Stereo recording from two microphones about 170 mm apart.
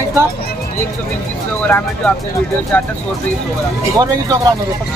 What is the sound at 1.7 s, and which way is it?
Speech, 10° left (ahead or behind).